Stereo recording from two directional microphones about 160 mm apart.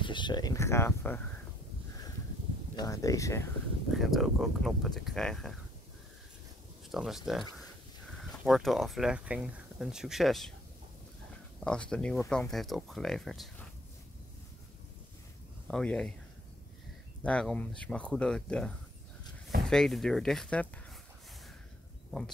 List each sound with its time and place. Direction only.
0.0 s speech: 30° left (ahead or behind); by 1.2 s 15° left (ahead or behind)
2.7 s speech: 20° left (ahead or behind)
3.9 s speech: centre (ahead or behind)
6.9 s speech: centre (ahead or behind)
11.6 s speech: 5° left (ahead or behind)
15.7 s speech: 5° left (ahead or behind)
17.2 s speech: 5° left (ahead or behind)